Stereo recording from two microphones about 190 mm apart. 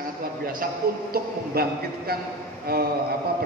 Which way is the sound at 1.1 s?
55° right (ahead or behind).